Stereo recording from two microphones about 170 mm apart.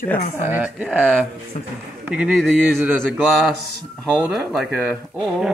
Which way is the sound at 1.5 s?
45° left (ahead or behind).